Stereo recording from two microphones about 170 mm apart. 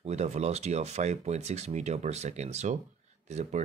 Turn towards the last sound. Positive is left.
turn(degrees=-40)  # may be behind; listen again after turning